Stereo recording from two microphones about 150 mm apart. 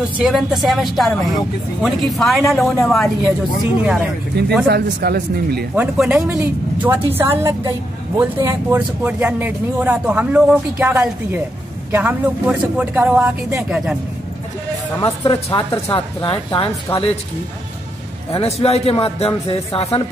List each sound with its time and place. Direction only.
0.2 s speech: centre (ahead or behind)
4.6 s speech: 90° right
5.8 s speech: 5° right (ahead or behind)
15.0 s speech: 25° left (ahead or behind)
18.3 s speech: 40° left (ahead or behind)